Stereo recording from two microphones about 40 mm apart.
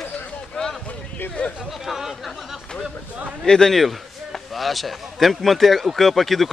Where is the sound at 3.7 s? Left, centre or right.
Centre.